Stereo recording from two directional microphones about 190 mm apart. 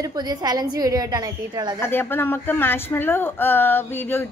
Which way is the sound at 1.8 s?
10° left (ahead or behind).